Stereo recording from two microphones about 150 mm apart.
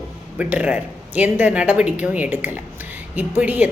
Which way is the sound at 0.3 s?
10° right (ahead or behind).